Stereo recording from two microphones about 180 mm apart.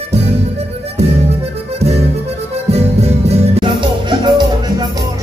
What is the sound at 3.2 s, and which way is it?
Music, 25° right (ahead or behind).